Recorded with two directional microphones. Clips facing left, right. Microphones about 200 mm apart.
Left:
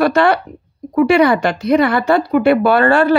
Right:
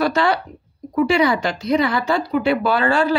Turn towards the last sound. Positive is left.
turn(degrees=60)  # may be behind; listen again after turning